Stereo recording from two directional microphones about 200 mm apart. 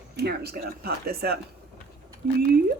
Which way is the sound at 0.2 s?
55° right (ahead or behind).